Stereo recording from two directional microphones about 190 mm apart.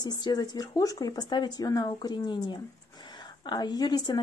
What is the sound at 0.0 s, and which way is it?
A woman's voice, 20° left (ahead or behind).